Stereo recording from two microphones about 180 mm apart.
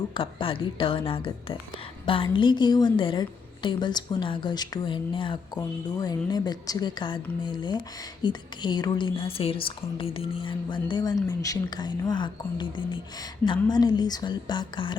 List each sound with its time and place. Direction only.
0.1 s a woman's voice: 30° left (ahead or behind)